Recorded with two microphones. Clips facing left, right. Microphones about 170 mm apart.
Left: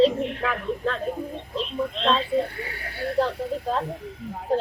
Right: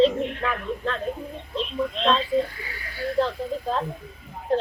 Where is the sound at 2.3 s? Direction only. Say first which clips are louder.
Even; 60° left (ahead or behind).